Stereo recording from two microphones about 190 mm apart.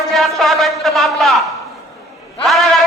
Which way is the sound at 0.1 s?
Centre (ahead or behind).